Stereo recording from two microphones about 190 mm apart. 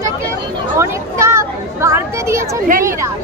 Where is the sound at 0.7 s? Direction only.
15° right (ahead or behind).